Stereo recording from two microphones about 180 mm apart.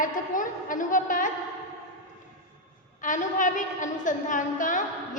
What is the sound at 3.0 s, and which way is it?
A woman's voice, 45° left (ahead or behind).